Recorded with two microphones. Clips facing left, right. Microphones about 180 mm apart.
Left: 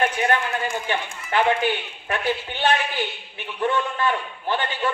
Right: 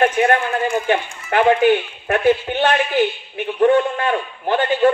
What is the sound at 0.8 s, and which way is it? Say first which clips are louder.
Speech: right 7 dB; 50° right (ahead or behind).